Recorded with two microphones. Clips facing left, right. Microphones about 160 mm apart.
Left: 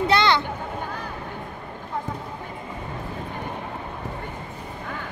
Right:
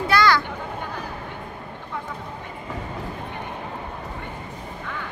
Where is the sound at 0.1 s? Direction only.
25° left (ahead or behind).